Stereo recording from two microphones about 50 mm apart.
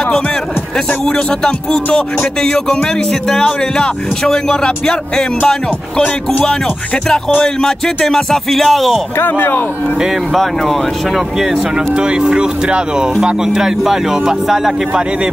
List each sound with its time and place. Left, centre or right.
0.7 s speech: centre
7.4 s speech: centre
9.2 s speech: left
10.3 s speech: centre
11.9 s speech: centre